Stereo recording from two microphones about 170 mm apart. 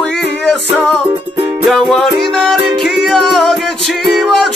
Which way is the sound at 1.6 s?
Centre (ahead or behind).